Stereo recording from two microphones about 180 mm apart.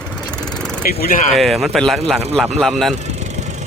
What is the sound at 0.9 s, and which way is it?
Speech, 55° left (ahead or behind).